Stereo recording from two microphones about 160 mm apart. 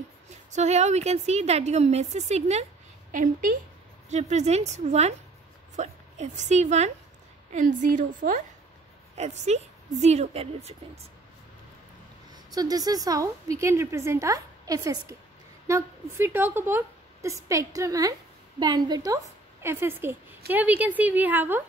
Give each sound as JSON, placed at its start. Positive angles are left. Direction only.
{"t": 0.5, "sound": "a woman's voice", "side_deg": -45}
{"t": 3.1, "sound": "a woman's voice", "side_deg": -55}
{"t": 9.1, "sound": "a woman's voice", "side_deg": -45}
{"t": 12.3, "sound": "a woman's voice", "side_deg": -25}